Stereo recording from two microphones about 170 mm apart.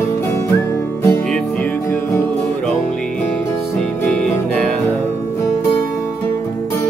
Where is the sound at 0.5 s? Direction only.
15° left (ahead or behind).